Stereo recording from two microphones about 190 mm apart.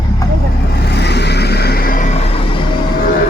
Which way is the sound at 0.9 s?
60° left (ahead or behind).